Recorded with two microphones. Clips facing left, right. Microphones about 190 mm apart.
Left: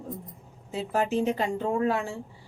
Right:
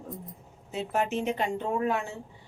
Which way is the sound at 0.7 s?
35° left (ahead or behind).